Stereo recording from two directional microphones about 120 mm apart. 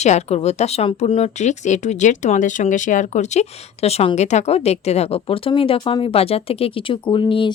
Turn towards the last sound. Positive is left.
turn(degrees=45)  # may be behind; listen again after turning